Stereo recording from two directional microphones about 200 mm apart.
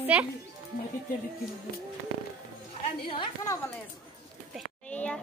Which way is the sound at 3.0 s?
25° left (ahead or behind).